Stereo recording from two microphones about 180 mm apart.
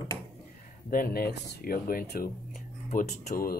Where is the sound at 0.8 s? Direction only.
55° left (ahead or behind).